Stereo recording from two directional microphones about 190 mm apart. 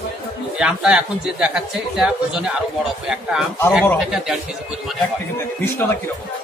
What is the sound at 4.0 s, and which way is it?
Speech, centre (ahead or behind).